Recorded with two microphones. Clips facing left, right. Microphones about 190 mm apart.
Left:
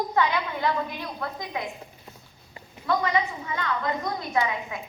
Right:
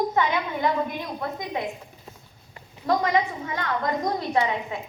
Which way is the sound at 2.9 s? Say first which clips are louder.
Right 2 dB; 40° right (ahead or behind).